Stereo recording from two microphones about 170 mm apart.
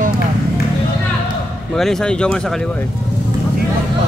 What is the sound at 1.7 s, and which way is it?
Speech, centre (ahead or behind).